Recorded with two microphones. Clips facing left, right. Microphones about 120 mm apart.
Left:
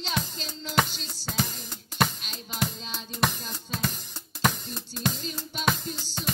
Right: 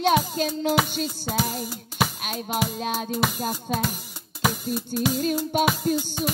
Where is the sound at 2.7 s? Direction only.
60° right (ahead or behind).